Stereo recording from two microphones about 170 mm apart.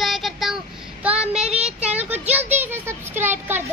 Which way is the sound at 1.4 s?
40° right (ahead or behind).